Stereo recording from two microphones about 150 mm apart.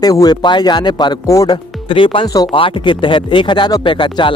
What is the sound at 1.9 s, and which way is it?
Speech, 35° left (ahead or behind).